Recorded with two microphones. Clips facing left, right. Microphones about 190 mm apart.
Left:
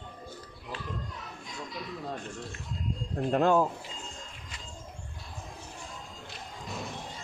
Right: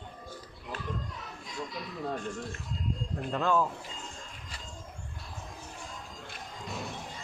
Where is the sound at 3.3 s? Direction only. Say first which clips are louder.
Left 5 dB; 50° left (ahead or behind).